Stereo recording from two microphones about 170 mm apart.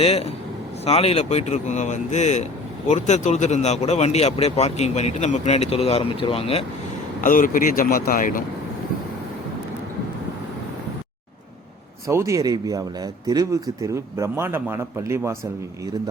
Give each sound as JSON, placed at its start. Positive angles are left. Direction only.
{"t": 0.0, "sound": "speech", "side_deg": 35}
{"t": 7.2, "sound": "speech", "side_deg": 50}
{"t": 12.0, "sound": "speech", "side_deg": -20}